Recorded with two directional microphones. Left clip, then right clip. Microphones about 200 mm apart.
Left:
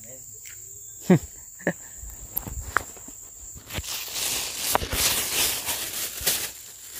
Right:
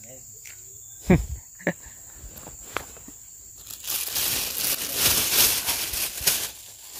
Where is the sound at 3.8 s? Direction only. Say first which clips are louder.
Right 3 dB; 45° right (ahead or behind).